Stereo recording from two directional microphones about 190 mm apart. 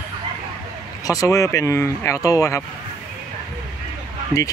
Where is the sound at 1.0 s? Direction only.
15° left (ahead or behind).